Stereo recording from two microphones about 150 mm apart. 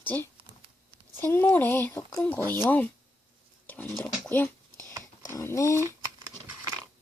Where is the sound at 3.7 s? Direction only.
10° left (ahead or behind).